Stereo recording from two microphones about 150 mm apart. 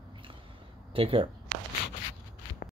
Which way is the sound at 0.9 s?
40° right (ahead or behind).